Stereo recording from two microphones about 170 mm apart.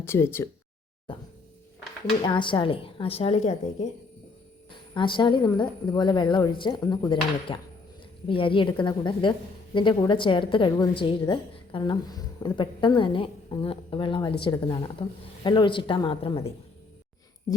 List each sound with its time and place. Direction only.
0.0 s speech: 15° left (ahead or behind)
2.2 s a woman's voice: 30° left (ahead or behind)
4.9 s a woman's voice: 30° left (ahead or behind)